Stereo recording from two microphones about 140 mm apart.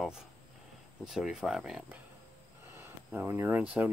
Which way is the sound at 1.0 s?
5° right (ahead or behind).